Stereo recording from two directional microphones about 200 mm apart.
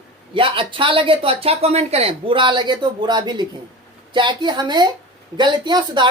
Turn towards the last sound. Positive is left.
turn(degrees=-20)  # may be behind; listen again after turning